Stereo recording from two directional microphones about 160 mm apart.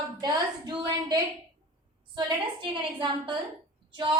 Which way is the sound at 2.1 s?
30° right (ahead or behind).